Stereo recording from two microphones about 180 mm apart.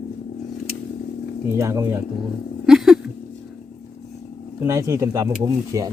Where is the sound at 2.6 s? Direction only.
Centre (ahead or behind).